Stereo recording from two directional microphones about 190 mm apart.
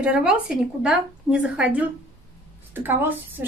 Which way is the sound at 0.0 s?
5° right (ahead or behind).